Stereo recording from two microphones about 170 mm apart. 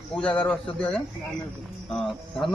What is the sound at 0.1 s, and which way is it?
Speech, 5° left (ahead or behind).